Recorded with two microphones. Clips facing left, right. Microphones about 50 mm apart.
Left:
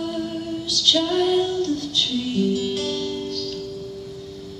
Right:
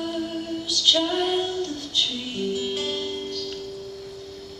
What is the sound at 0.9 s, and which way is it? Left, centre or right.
Music, centre.